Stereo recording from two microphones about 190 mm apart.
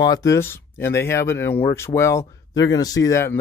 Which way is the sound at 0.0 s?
20° left (ahead or behind).